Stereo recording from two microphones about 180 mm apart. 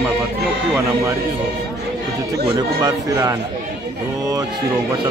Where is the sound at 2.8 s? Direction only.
20° right (ahead or behind).